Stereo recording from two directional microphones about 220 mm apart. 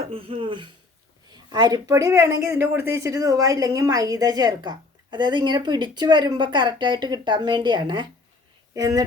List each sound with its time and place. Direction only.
0.1 s a woman's voice: 25° right (ahead or behind)